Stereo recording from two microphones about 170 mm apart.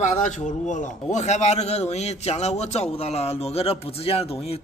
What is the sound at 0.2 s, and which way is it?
A man's voice, 45° left (ahead or behind).